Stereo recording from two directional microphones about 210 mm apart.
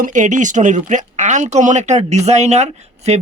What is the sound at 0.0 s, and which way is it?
Speech, 35° right (ahead or behind).